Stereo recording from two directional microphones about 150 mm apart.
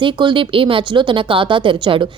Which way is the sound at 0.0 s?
35° right (ahead or behind).